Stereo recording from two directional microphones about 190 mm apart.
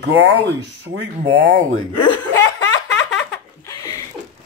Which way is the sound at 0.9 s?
60° right (ahead or behind).